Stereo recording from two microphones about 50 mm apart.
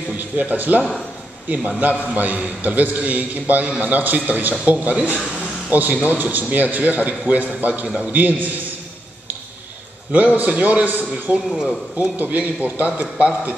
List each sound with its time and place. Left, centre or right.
0.4 s a man's voice: right
10.1 s a man's voice: right